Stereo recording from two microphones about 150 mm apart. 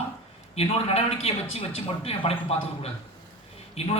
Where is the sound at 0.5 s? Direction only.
40° left (ahead or behind).